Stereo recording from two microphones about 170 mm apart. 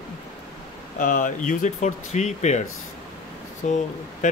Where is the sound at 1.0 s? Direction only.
50° left (ahead or behind).